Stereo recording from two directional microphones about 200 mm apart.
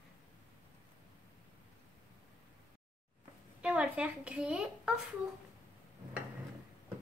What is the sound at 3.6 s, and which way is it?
A woman's voice, 5° right (ahead or behind).